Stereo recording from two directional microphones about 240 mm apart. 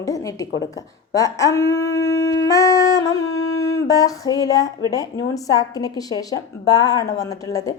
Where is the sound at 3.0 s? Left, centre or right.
Left.